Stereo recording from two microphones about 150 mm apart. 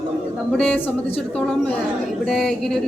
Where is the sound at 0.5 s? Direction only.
5° left (ahead or behind).